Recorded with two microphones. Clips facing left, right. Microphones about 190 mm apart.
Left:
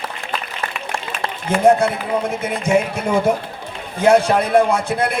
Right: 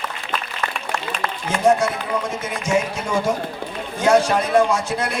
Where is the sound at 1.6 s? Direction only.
60° left (ahead or behind).